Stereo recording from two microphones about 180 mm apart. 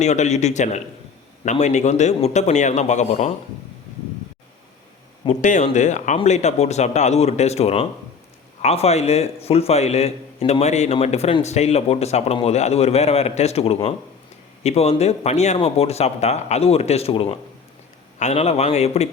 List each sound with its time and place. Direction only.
0.0 s a man's voice: 40° left (ahead or behind)
5.3 s a man's voice: 45° left (ahead or behind)